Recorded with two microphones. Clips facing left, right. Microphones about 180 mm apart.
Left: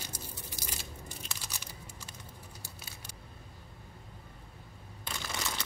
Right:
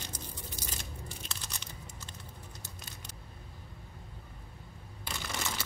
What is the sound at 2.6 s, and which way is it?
Vehicle, 10° left (ahead or behind).